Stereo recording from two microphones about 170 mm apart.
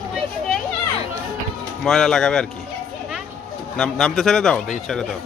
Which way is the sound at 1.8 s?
Centre (ahead or behind).